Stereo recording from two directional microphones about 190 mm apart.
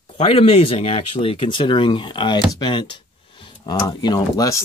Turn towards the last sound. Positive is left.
turn(degrees=20)  # may be behind; listen again after turning